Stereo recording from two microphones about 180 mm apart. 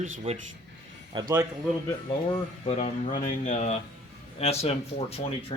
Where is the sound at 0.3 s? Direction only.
35° right (ahead or behind).